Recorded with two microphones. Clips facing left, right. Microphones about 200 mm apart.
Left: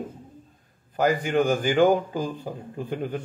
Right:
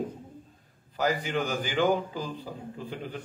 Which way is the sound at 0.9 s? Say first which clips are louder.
Left 6 dB; 50° left (ahead or behind).